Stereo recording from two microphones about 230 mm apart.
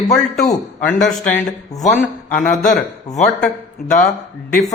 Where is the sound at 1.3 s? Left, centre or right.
Centre.